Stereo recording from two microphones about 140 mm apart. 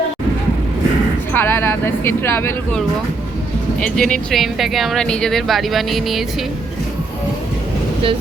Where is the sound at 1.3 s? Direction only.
15° left (ahead or behind).